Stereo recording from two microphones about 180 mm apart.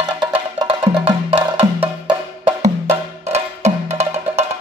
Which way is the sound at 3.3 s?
35° right (ahead or behind).